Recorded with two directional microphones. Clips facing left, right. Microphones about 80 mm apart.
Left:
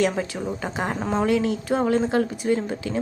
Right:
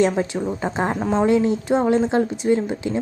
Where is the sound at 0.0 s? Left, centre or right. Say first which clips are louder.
Right 4 dB; right.